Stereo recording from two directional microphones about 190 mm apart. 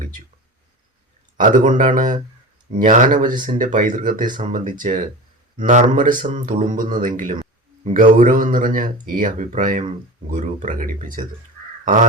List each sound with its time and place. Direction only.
1.4 s speech: 45° right (ahead or behind)